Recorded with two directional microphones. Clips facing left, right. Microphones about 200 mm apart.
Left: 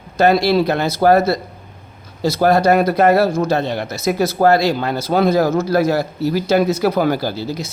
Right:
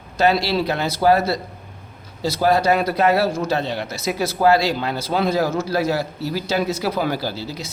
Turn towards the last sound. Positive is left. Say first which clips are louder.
# left 5 dB
turn(degrees=45)  # may be behind; listen again after turning